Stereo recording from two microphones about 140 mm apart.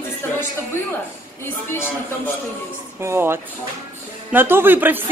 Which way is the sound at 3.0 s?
15° right (ahead or behind).